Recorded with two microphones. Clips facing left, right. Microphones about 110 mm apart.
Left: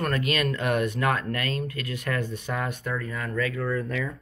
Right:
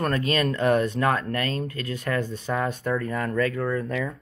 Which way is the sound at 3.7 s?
25° right (ahead or behind).